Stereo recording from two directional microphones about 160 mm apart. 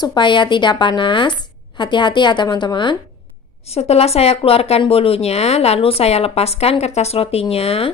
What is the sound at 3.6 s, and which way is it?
A woman's voice, 40° left (ahead or behind).